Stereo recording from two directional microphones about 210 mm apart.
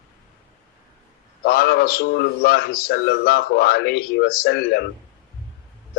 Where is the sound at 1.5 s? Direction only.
50° left (ahead or behind).